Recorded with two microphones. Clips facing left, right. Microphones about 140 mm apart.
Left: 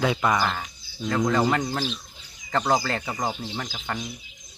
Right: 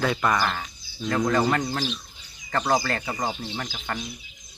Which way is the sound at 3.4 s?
15° left (ahead or behind).